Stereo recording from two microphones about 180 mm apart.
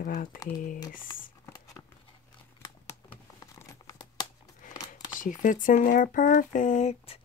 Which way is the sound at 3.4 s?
20° left (ahead or behind).